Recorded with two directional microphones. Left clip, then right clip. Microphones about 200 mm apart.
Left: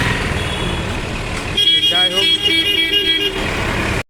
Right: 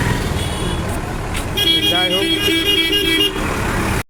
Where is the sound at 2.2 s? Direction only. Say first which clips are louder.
Left 2 dB; 55° right (ahead or behind).